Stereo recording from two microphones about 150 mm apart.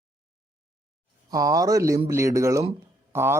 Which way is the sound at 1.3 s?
25° right (ahead or behind).